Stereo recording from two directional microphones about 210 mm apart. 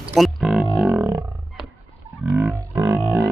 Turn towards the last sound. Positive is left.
turn(degrees=-15)  # may be behind; listen again after turning